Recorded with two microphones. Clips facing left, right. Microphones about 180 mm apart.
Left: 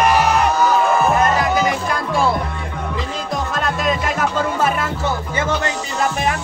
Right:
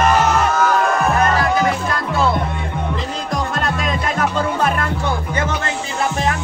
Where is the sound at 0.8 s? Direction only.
Centre (ahead or behind).